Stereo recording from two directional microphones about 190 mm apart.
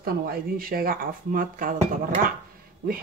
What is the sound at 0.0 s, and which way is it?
Speech, 50° right (ahead or behind).